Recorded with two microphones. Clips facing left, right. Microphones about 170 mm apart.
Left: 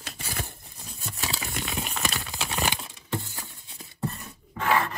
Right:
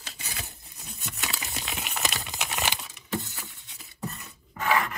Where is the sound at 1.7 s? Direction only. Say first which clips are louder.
Even; 35° left (ahead or behind).